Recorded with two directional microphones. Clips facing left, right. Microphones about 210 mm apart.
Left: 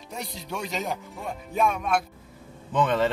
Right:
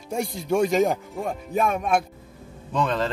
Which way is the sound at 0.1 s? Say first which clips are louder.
Right 11 dB; 50° right (ahead or behind).